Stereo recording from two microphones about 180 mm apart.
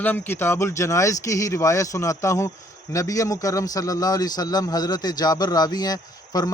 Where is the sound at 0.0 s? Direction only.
10° left (ahead or behind).